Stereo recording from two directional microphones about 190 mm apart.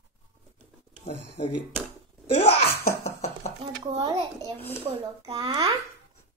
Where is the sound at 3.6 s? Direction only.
25° right (ahead or behind).